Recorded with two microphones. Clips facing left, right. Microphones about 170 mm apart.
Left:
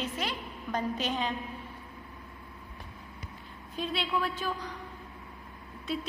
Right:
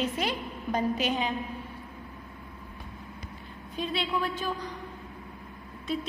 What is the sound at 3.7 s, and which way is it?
Speech, centre (ahead or behind).